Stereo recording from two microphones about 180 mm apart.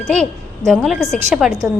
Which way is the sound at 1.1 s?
Centre (ahead or behind).